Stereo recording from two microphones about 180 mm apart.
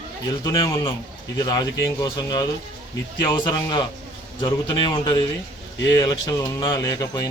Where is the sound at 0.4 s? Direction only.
25° left (ahead or behind).